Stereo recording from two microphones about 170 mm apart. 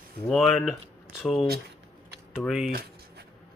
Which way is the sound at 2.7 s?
65° right (ahead or behind).